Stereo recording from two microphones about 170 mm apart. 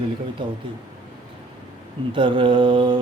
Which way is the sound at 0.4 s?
30° right (ahead or behind).